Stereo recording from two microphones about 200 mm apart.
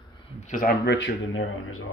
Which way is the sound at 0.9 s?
75° left (ahead or behind).